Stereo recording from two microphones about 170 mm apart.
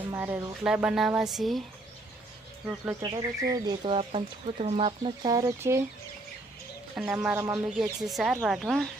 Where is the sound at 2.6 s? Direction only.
15° right (ahead or behind).